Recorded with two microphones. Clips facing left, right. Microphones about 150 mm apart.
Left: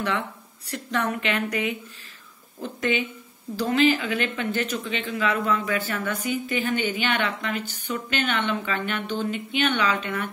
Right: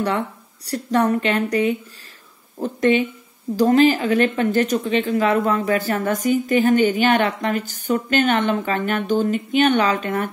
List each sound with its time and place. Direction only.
0.7 s speech: 35° right (ahead or behind)